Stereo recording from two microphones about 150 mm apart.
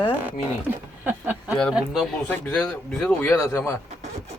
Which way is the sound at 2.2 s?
10° left (ahead or behind).